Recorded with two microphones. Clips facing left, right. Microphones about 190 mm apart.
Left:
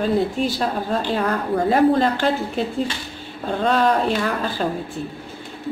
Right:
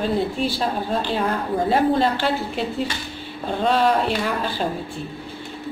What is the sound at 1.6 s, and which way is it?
Speech, 45° left (ahead or behind).